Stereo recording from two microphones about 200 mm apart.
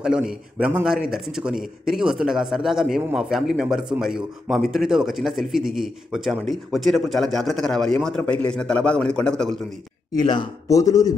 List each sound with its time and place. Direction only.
0.0 s a man's voice: 5° right (ahead or behind)
10.2 s a man's voice: 20° left (ahead or behind)